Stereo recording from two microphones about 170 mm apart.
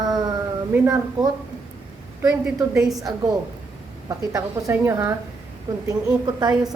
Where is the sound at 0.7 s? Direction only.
20° right (ahead or behind).